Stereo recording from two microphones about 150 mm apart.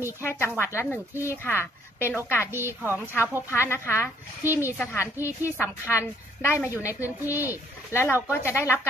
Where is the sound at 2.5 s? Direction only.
15° right (ahead or behind).